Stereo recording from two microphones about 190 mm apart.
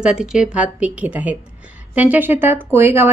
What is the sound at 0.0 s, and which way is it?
A woman's voice, 5° right (ahead or behind).